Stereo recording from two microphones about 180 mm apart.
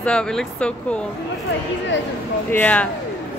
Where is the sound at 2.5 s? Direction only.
10° left (ahead or behind).